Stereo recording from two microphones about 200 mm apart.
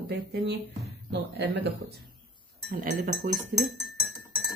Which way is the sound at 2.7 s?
45° right (ahead or behind).